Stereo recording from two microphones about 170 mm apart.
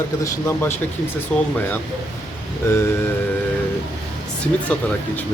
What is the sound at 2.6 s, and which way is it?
Speech, 15° left (ahead or behind).